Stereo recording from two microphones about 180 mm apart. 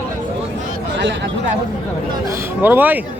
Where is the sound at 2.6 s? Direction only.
10° right (ahead or behind).